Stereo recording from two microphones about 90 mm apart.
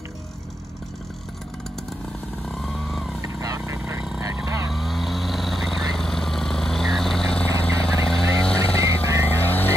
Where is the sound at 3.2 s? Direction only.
40° right (ahead or behind).